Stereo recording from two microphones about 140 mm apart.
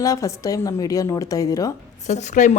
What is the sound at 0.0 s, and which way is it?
Speech, 25° left (ahead or behind).